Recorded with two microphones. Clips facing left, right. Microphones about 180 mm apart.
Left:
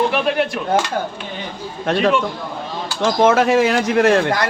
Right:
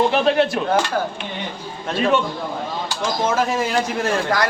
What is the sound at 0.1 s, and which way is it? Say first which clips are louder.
Speech: right 2 dB; 30° right (ahead or behind).